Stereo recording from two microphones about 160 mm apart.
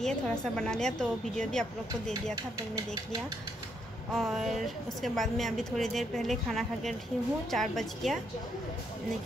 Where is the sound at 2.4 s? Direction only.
25° right (ahead or behind).